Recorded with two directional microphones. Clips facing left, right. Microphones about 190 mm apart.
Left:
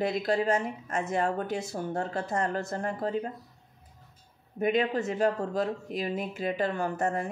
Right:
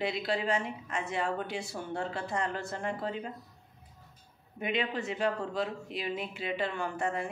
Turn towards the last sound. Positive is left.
turn(degrees=40)  # may be behind; listen again after turning